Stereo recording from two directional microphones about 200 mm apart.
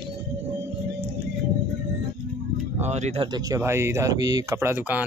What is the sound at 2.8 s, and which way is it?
Speech, 35° right (ahead or behind).